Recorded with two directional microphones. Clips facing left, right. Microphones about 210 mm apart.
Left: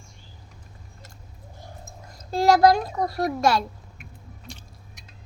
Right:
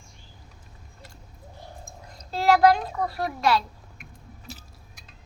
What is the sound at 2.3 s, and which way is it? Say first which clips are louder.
A child's voice: left 2 dB; 45° left (ahead or behind).